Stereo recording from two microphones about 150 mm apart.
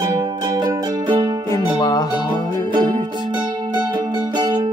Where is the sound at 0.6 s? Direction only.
30° right (ahead or behind).